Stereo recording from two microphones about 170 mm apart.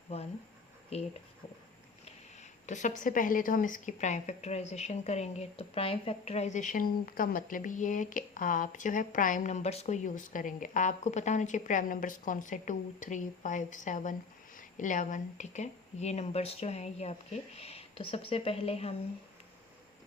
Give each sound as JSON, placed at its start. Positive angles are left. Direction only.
{"t": 0.1, "sound": "speech", "side_deg": 35}
{"t": 2.6, "sound": "a woman's voice", "side_deg": 45}